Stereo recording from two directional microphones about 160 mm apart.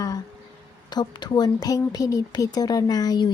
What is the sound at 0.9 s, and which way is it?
Speech, 25° left (ahead or behind).